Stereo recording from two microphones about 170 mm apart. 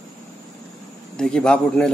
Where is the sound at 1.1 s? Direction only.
5° left (ahead or behind).